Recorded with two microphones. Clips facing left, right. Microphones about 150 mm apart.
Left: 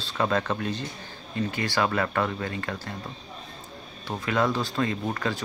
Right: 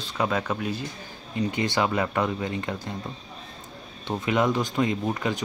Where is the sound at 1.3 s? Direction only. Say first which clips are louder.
Right 2 dB; 20° right (ahead or behind).